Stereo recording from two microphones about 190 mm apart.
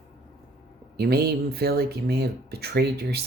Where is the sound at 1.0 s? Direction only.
55° right (ahead or behind).